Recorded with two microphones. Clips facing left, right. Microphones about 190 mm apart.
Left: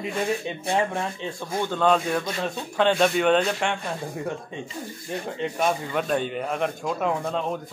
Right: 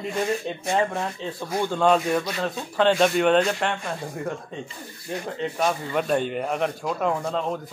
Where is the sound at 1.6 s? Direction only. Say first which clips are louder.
Right 1 dB; 10° right (ahead or behind).